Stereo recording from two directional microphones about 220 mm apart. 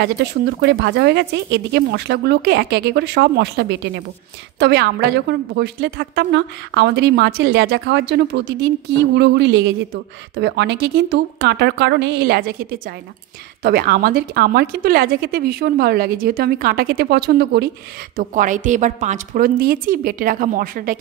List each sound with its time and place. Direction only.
0.0 s a woman's voice: 50° right (ahead or behind)
18.1 s a woman's voice: 35° right (ahead or behind)